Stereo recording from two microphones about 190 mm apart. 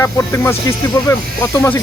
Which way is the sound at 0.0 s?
15° left (ahead or behind).